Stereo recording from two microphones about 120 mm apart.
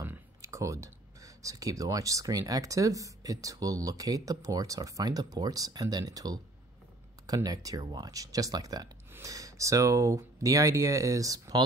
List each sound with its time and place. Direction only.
0.0 s speech: 20° right (ahead or behind)